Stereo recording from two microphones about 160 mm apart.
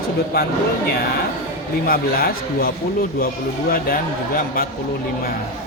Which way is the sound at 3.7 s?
65° left (ahead or behind).